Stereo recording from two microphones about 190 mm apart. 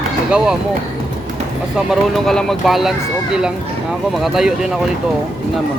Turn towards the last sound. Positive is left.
turn(degrees=0)  # may be behind; listen again after turning